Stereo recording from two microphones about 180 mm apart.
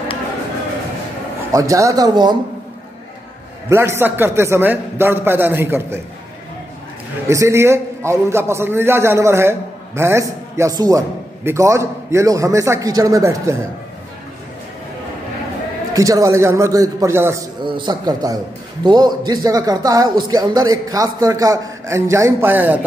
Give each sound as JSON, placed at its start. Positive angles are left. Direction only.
{"t": 1.5, "sound": "speech", "side_deg": -15}
{"t": 3.6, "sound": "a man's voice", "side_deg": -15}
{"t": 7.2, "sound": "a man's voice", "side_deg": -15}
{"t": 15.9, "sound": "a man's voice", "side_deg": -20}
{"t": 17.6, "sound": "speech", "side_deg": -25}